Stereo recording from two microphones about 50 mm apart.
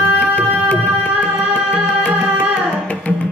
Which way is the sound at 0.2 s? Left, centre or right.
Left.